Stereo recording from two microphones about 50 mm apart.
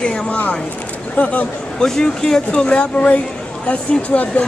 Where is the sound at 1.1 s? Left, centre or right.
Left.